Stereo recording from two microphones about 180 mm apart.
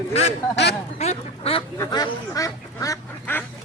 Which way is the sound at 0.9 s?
35° left (ahead or behind).